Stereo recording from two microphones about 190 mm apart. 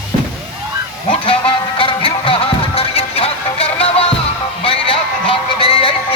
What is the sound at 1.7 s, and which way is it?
Music, 25° left (ahead or behind).